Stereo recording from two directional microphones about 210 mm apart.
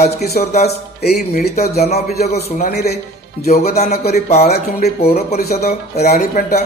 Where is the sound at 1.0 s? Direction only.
50° left (ahead or behind).